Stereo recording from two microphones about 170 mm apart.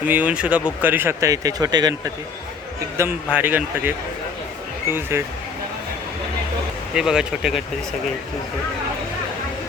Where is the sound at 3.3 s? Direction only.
10° right (ahead or behind).